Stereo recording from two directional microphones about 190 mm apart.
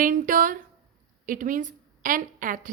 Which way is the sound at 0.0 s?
45° right (ahead or behind).